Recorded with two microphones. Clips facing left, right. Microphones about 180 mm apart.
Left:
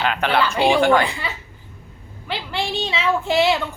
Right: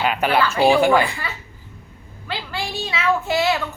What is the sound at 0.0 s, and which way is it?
Speech, 10° right (ahead or behind).